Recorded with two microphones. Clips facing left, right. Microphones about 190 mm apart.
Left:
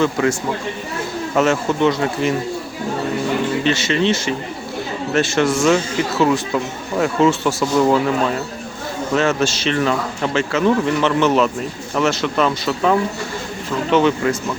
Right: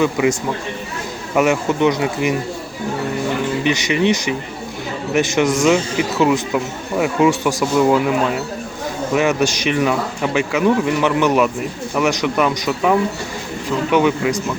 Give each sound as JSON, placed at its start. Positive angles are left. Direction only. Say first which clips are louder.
{"t": 0.0, "sound": "a man's voice", "louder": "right 1 dB", "side_deg": -15}
{"t": 1.4, "sound": "a man's voice", "louder": "right 1 dB", "side_deg": -15}
{"t": 3.6, "sound": "a man's voice", "louder": "right 1 dB", "side_deg": -15}
{"t": 9.1, "sound": "a man's voice", "louder": "right 1 dB", "side_deg": -15}